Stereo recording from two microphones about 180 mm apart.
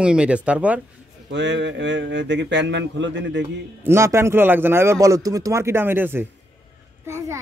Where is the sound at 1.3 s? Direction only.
85° right.